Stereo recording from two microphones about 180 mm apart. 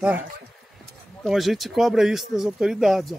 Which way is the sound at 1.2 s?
Centre (ahead or behind).